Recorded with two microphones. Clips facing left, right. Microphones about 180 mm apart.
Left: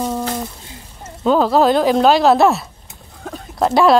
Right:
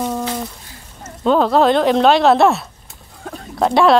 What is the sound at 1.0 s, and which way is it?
Speech, 5° left (ahead or behind).